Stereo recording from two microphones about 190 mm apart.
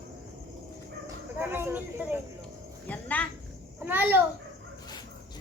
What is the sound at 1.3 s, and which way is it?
Speech, 10° right (ahead or behind).